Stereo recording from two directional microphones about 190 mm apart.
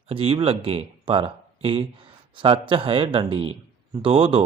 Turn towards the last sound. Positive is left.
turn(degrees=-30)  # may be behind; listen again after turning